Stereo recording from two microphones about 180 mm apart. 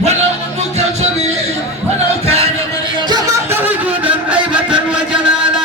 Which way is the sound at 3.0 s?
20° right (ahead or behind).